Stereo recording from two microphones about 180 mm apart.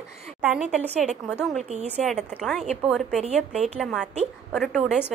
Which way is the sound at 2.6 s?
35° right (ahead or behind).